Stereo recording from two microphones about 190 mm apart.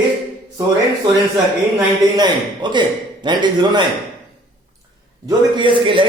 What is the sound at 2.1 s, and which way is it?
A man's voice, 25° right (ahead or behind).